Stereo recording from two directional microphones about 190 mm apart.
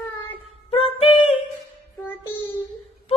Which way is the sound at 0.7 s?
30° left (ahead or behind).